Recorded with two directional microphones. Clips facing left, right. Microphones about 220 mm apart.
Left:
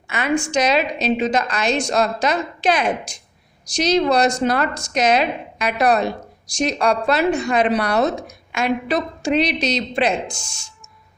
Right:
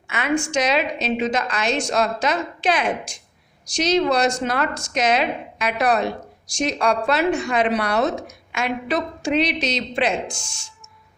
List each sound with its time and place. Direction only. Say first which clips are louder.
0.1 s a woman's voice: left 2 dB; 35° left (ahead or behind)